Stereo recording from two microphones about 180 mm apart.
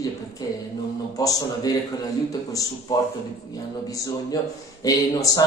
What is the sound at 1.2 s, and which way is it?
Speech, 20° left (ahead or behind).